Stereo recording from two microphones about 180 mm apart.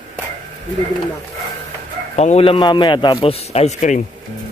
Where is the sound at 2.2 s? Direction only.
35° left (ahead or behind).